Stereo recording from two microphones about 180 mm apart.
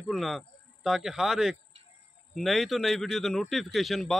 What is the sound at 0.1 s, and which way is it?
A man's voice, centre (ahead or behind).